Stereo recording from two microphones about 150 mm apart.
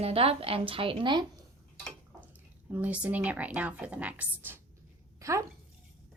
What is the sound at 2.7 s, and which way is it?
A woman's voice, 10° right (ahead or behind).